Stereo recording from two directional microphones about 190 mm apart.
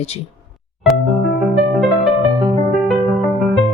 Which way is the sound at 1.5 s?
Centre (ahead or behind).